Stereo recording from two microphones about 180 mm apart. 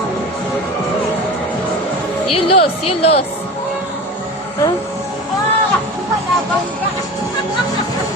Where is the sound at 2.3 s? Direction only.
30° left (ahead or behind).